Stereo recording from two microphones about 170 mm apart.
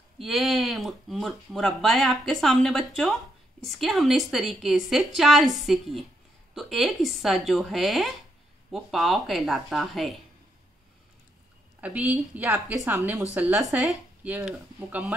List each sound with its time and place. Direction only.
0.2 s speech: centre (ahead or behind)
11.8 s a woman's voice: 10° right (ahead or behind)
12.8 s a woman's voice: 20° right (ahead or behind)
13.3 s speech: 5° right (ahead or behind)